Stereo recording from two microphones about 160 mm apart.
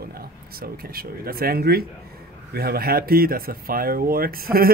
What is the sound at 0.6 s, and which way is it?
Speech, 70° right (ahead or behind).